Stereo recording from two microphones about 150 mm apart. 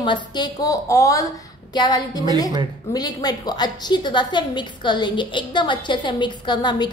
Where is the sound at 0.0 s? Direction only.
30° left (ahead or behind).